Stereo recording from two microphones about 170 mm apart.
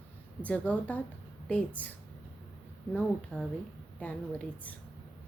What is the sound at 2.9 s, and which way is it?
Speech, 5° left (ahead or behind).